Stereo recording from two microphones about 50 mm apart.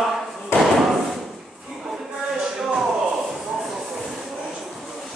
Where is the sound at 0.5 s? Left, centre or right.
Left.